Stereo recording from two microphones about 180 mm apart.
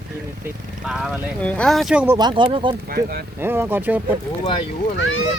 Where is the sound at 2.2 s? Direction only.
25° right (ahead or behind).